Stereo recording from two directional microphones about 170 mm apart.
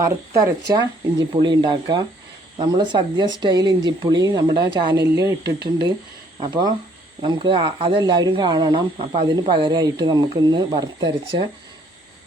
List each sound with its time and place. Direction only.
0.0 s speech: 20° right (ahead or behind)
5.4 s speech: 75° right (ahead or behind)
6.5 s speech: 25° right (ahead or behind)